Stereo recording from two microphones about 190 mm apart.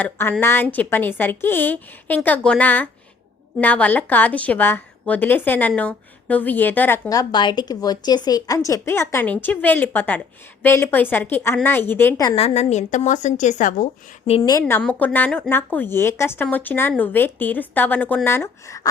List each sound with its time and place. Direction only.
0.0 s a woman's voice: 10° left (ahead or behind)
12.4 s a woman's voice: 35° left (ahead or behind)
14.3 s a woman's voice: 25° left (ahead or behind)
14.6 s a woman's voice: 5° left (ahead or behind)